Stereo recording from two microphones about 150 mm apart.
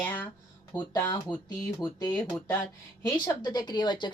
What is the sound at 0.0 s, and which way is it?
Speech, 15° left (ahead or behind).